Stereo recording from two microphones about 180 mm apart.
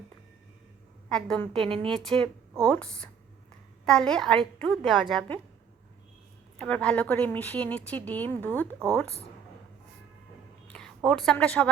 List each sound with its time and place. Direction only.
1.1 s a woman's voice: 5° left (ahead or behind)
1.6 s speech: 30° right (ahead or behind)
1.9 s a woman's voice: 5° left (ahead or behind)
6.6 s speech: 5° left (ahead or behind)
10.7 s a woman's voice: 5° left (ahead or behind)